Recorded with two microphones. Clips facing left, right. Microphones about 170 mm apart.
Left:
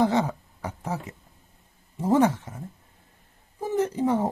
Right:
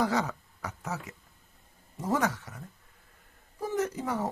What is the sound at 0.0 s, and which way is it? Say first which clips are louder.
Speech: left 6 dB; 25° left (ahead or behind).